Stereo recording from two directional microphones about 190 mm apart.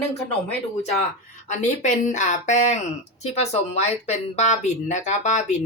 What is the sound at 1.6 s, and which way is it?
Speech, 40° left (ahead or behind).